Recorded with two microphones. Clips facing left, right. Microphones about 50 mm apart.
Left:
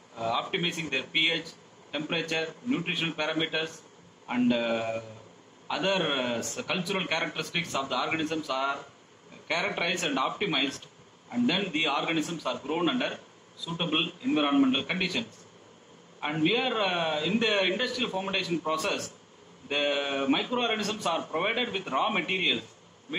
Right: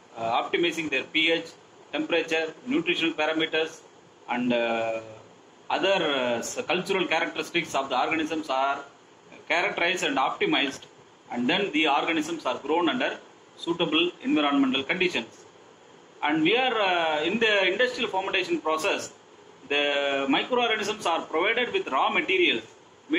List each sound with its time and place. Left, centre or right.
0.1 s a man's voice: right